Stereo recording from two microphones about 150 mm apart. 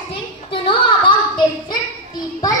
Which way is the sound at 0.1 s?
35° left (ahead or behind).